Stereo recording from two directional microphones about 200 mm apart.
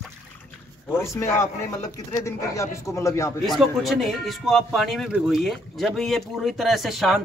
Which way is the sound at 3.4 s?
Centre (ahead or behind).